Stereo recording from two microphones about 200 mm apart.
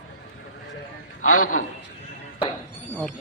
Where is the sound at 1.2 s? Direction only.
90° left.